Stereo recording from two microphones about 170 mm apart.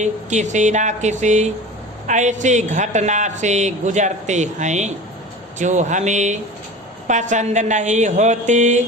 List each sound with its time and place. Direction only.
0.0 s a man's voice: 45° right (ahead or behind)